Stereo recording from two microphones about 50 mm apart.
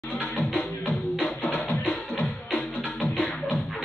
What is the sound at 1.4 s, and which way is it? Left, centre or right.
Music, left.